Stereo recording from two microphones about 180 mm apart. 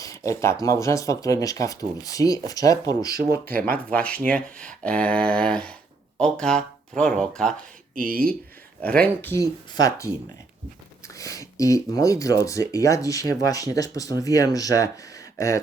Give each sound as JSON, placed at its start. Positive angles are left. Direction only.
{"t": 0.3, "sound": "speech", "side_deg": 15}
{"t": 3.4, "sound": "speech", "side_deg": -55}
{"t": 3.8, "sound": "speech", "side_deg": 5}
{"t": 7.9, "sound": "speech", "side_deg": -55}
{"t": 8.8, "sound": "speech", "side_deg": 5}
{"t": 11.2, "sound": "speech", "side_deg": 20}